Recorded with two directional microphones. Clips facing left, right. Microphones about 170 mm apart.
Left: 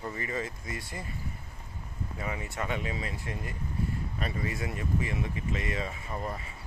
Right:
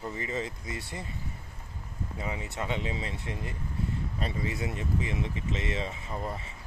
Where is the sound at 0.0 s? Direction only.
20° right (ahead or behind).